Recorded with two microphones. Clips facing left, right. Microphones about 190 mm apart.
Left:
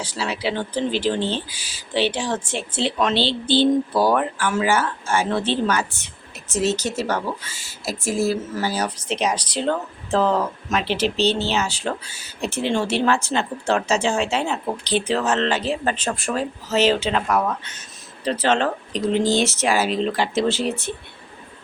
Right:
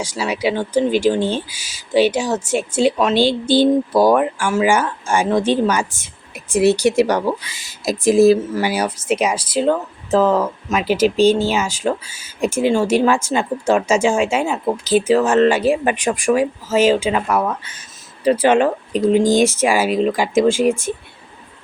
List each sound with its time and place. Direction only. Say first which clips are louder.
0.2 s speech: right 5 dB; 10° right (ahead or behind)
1.2 s speech: right 4 dB; 45° right (ahead or behind)
1.5 s speech: right 7 dB; 10° right (ahead or behind)
10.9 s speech: right 9 dB; 45° right (ahead or behind)
11.3 s speech: right 6 dB; 10° right (ahead or behind)